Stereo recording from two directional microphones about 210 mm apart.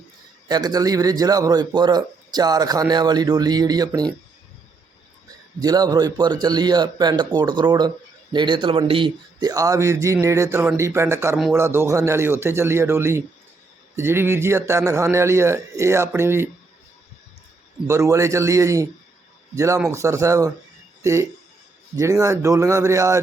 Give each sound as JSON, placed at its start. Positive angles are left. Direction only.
{"t": 0.4, "sound": "a man's voice", "side_deg": -20}
{"t": 5.5, "sound": "a man's voice", "side_deg": -15}
{"t": 17.8, "sound": "a man's voice", "side_deg": -15}